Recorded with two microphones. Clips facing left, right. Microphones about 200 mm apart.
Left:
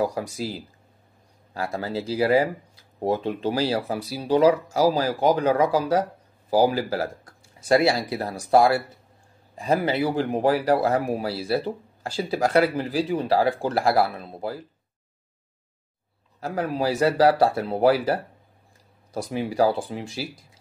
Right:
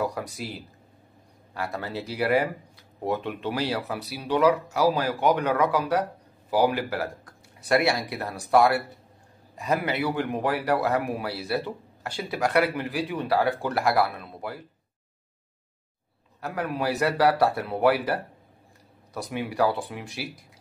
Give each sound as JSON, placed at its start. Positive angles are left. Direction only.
{"t": 0.0, "sound": "speech", "side_deg": 30}
{"t": 16.3, "sound": "speech", "side_deg": 30}
{"t": 19.3, "sound": "speech", "side_deg": 30}